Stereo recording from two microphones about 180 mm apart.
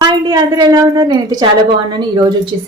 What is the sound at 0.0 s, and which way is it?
Speech, 20° right (ahead or behind).